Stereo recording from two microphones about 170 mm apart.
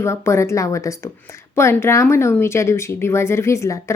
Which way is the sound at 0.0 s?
15° left (ahead or behind).